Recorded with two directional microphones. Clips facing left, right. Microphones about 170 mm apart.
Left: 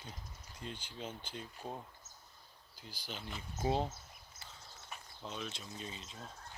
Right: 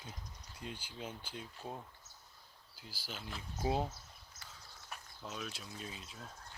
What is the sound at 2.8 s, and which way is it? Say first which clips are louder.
Speech: left 1 dB; 5° right (ahead or behind).